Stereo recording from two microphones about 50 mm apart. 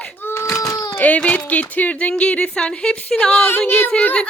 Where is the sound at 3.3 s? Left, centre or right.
Left.